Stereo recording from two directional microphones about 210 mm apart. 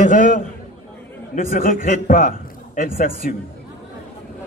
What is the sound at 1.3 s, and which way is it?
A man's voice, 35° left (ahead or behind).